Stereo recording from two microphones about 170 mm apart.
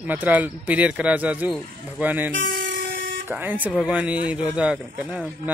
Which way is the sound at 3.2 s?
10° right (ahead or behind).